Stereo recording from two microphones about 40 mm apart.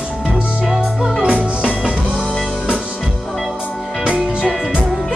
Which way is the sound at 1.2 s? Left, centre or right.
Right.